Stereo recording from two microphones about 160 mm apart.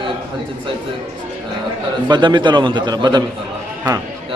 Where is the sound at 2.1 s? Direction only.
30° right (ahead or behind).